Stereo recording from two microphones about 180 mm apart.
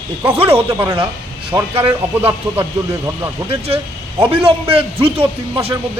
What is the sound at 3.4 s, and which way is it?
A man's voice, 35° right (ahead or behind).